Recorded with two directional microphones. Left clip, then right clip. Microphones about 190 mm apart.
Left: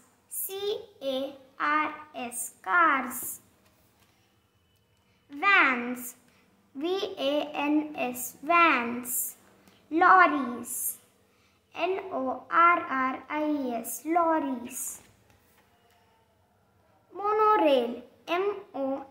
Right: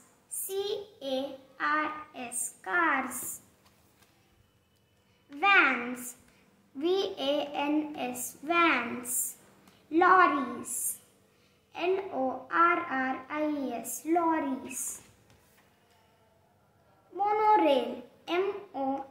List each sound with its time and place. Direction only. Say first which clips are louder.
0.3 s child singing: left 1 dB; 40° left (ahead or behind)
5.4 s a sound: left 1 dB; 35° left (ahead or behind)
6.8 s child singing: even; 35° left (ahead or behind)
9.8 s a sound: left 3 dB; 40° left (ahead or behind)
12.4 s child singing: left 4 dB; 40° left (ahead or behind)
17.2 s child singing: left 1 dB; 40° left (ahead or behind)